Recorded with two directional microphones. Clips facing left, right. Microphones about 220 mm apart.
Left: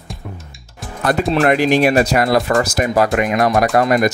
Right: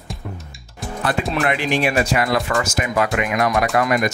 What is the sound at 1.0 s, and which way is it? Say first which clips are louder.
Speech: left 6 dB; 45° left (ahead or behind).